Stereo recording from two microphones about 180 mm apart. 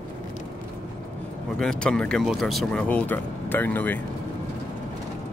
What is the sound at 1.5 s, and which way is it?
Speech, 5° left (ahead or behind).